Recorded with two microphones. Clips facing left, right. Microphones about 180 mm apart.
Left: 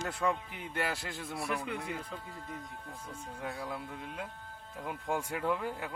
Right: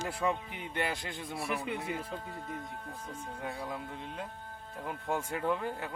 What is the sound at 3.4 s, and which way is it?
Speech, centre (ahead or behind).